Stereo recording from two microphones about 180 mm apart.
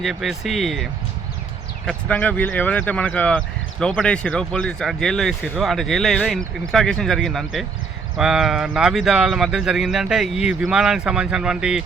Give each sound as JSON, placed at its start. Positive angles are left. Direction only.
{"t": 0.0, "sound": "speech", "side_deg": 0}
{"t": 1.9, "sound": "speech", "side_deg": 5}